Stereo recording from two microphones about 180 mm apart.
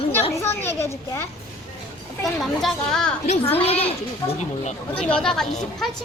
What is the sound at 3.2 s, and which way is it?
Speech, 35° left (ahead or behind).